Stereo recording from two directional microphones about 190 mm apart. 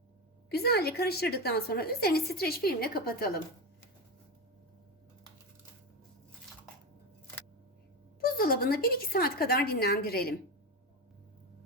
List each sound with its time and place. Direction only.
0.5 s a woman's voice: 55° left (ahead or behind)
8.2 s speech: 50° left (ahead or behind)